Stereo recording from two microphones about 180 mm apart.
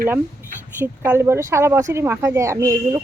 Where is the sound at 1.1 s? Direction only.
15° right (ahead or behind).